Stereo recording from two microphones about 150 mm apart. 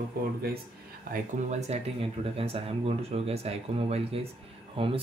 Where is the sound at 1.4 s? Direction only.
50° right (ahead or behind).